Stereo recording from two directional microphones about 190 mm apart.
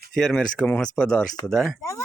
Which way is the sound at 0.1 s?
5° left (ahead or behind).